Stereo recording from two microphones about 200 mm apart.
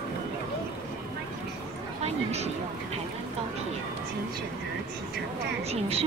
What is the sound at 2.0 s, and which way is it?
Speech, 30° right (ahead or behind).